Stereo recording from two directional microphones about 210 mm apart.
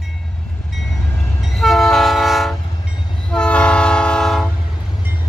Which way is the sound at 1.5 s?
Centre (ahead or behind).